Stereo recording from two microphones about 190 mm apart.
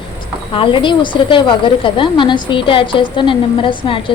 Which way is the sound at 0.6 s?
25° left (ahead or behind).